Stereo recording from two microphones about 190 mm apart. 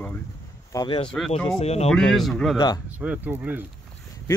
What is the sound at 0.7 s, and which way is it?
Speech, 25° left (ahead or behind).